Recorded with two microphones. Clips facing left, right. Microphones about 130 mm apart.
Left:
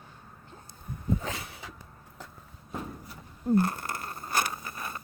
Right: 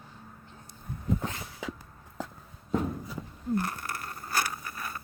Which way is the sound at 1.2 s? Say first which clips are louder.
Even; 80° left.